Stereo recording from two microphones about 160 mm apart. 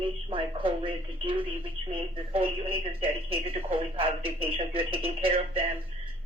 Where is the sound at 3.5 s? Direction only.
35° right (ahead or behind).